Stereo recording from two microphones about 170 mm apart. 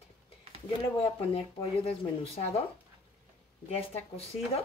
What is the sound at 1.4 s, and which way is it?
Speech, 35° left (ahead or behind).